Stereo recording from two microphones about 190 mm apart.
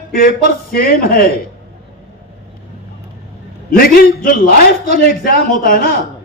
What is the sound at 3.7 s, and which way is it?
A man's voice, 50° left (ahead or behind).